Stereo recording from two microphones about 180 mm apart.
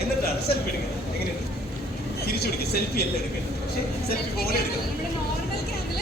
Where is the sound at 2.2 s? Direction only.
60° left (ahead or behind).